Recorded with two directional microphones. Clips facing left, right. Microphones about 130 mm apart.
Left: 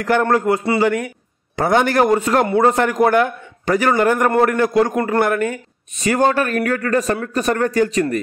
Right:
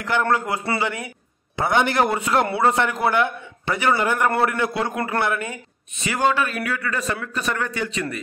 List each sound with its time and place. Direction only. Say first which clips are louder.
0.0 s a man's voice: left 6 dB; 45° left (ahead or behind)